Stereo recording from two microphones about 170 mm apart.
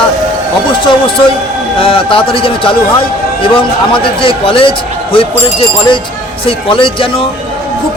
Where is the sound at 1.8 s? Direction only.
30° left (ahead or behind).